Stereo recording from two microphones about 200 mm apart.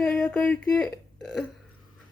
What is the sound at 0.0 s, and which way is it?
Speech, 5° left (ahead or behind).